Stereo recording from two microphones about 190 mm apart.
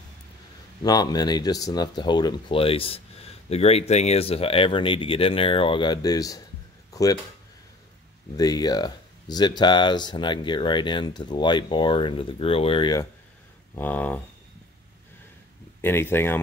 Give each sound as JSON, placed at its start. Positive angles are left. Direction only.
{"t": 0.8, "sound": "speech", "side_deg": 20}
{"t": 6.9, "sound": "a sound", "side_deg": 20}
{"t": 8.4, "sound": "speech", "side_deg": 20}
{"t": 13.7, "sound": "speech", "side_deg": 10}
{"t": 15.8, "sound": "speech", "side_deg": 10}